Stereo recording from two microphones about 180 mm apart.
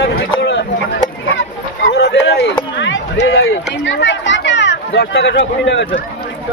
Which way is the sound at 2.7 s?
85° left.